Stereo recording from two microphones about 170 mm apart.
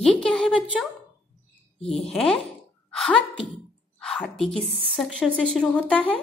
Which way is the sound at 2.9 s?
5° left (ahead or behind).